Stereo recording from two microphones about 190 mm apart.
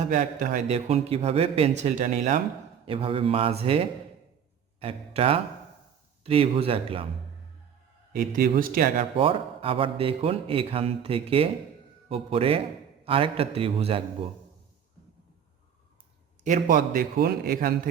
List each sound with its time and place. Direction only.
0.1 s a man's voice: 45° right (ahead or behind)
2.8 s a man's voice: 30° right (ahead or behind)
8.1 s a man's voice: 45° right (ahead or behind)
9.1 s a man's voice: 30° right (ahead or behind)
16.4 s a man's voice: 45° right (ahead or behind)